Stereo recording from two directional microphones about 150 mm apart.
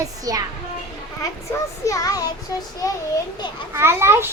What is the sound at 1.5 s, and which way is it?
Child singing, 20° left (ahead or behind).